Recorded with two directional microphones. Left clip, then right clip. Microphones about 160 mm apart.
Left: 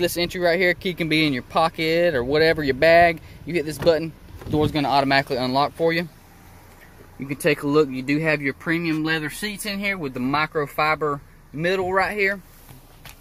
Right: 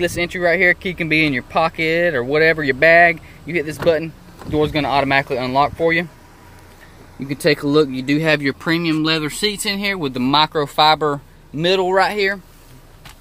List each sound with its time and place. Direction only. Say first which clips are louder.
0.0 s speech: right 3 dB; 20° left (ahead or behind)
7.2 s speech: right 4 dB; centre (ahead or behind)
8.3 s speech: right 6 dB; 20° right (ahead or behind)
9.9 s speech: right 7 dB; 10° right (ahead or behind)